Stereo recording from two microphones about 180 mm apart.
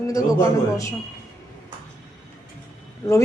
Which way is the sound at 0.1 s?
15° left (ahead or behind).